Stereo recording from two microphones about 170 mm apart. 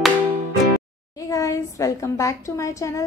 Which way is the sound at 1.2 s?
20° left (ahead or behind).